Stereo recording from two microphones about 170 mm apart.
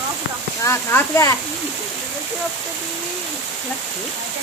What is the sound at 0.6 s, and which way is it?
Speech, 15° left (ahead or behind).